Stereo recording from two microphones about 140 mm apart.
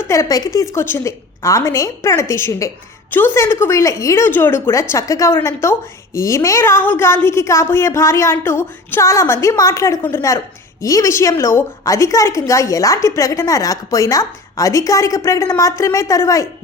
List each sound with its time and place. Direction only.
0.0 s a woman's voice: 20° left (ahead or behind)